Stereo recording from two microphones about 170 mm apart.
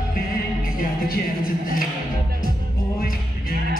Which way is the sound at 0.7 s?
60° left (ahead or behind).